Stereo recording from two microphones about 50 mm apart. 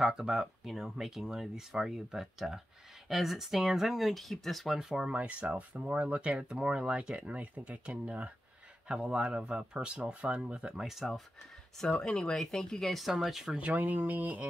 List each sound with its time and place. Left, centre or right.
0.0 s speech: centre
4.7 s speech: centre
5.1 s speech: right
10.8 s speech: centre
12.0 s speech: centre
12.8 s speech: centre
13.5 s speech: right
13.7 s speech: right